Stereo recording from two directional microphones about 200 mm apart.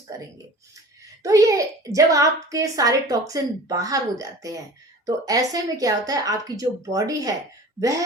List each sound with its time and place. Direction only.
1.2 s a child's voice: 15° right (ahead or behind)